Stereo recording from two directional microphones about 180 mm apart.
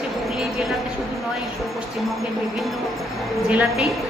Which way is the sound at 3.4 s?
5° right (ahead or behind).